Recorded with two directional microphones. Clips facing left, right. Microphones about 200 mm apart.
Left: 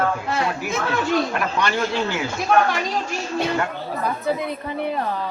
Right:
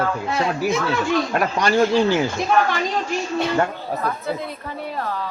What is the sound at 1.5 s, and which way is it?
Speech, 40° right (ahead or behind).